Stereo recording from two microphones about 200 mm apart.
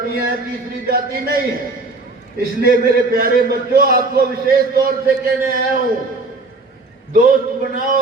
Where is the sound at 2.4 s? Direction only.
50° right (ahead or behind).